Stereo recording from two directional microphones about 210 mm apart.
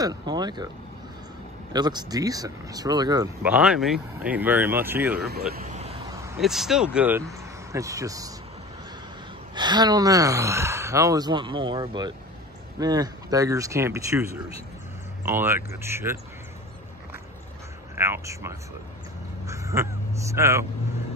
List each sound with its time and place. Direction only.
0.0 s speech: 20° right (ahead or behind)
1.7 s speech: 20° right (ahead or behind)
3.4 s speech: 5° right (ahead or behind)
5.3 s speech: 45° right (ahead or behind)
5.7 s vehicle: 30° right (ahead or behind)
6.4 s speech: centre (ahead or behind)
9.6 s speech: 20° right (ahead or behind)
17.9 s speech: 10° right (ahead or behind)